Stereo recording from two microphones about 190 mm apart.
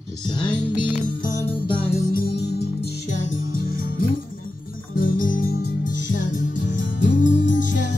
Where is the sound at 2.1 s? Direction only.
55° left (ahead or behind).